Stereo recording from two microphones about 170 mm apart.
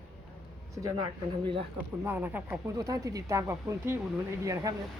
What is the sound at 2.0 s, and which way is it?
Speech, 10° right (ahead or behind).